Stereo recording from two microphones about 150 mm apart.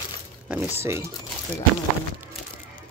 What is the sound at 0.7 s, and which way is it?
Speech, 15° right (ahead or behind).